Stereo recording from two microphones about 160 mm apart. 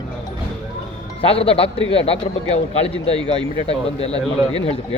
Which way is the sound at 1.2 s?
35° left (ahead or behind).